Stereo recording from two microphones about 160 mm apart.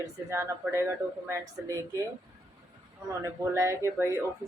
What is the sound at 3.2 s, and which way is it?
A man's voice, 20° right (ahead or behind).